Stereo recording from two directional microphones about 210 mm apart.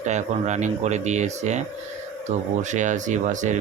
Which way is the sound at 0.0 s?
35° right (ahead or behind).